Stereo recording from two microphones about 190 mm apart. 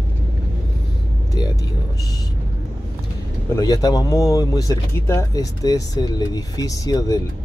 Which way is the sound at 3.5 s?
20° left (ahead or behind).